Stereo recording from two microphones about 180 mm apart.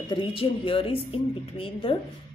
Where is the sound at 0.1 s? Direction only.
30° left (ahead or behind).